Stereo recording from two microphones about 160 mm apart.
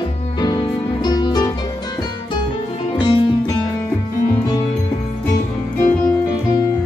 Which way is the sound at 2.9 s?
30° left (ahead or behind).